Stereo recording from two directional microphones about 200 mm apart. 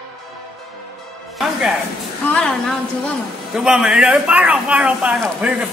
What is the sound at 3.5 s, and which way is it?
Speech, 5° right (ahead or behind).